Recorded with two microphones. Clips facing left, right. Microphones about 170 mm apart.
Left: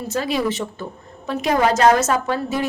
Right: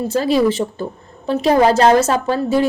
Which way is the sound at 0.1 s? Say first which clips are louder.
Right 6 dB; 30° right (ahead or behind).